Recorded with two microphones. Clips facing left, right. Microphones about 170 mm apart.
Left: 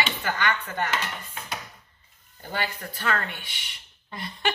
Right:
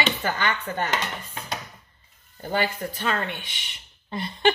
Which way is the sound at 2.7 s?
25° right (ahead or behind).